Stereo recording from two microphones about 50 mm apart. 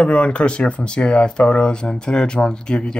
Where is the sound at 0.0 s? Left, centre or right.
Left.